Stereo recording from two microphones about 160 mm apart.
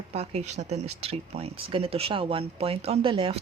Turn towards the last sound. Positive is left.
turn(degrees=-35)  # may be behind; listen again after turning